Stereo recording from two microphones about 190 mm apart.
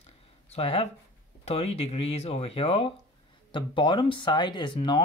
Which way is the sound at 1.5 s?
30° left (ahead or behind).